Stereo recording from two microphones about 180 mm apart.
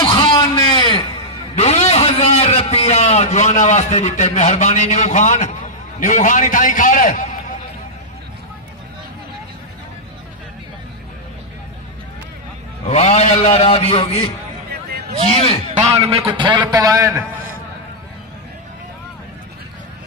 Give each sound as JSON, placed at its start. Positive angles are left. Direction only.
{"t": 0.0, "sound": "a sound", "side_deg": 25}
{"t": 1.5, "sound": "a man's voice", "side_deg": 35}
{"t": 12.8, "sound": "a man's voice", "side_deg": 40}
{"t": 14.7, "sound": "hubbub", "side_deg": -60}
{"t": 15.2, "sound": "a man's voice", "side_deg": 30}
{"t": 16.3, "sound": "a man's voice", "side_deg": -25}